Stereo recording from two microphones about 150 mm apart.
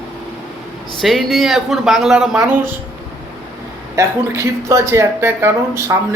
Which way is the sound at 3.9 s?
20° right (ahead or behind).